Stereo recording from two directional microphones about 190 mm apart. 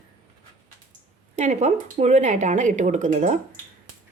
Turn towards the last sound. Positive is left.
turn(degrees=-40)  # may be behind; listen again after turning